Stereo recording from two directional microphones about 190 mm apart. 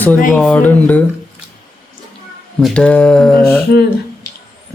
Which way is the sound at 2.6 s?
5° left (ahead or behind).